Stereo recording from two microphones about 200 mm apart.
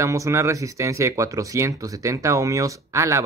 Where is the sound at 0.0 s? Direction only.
15° right (ahead or behind).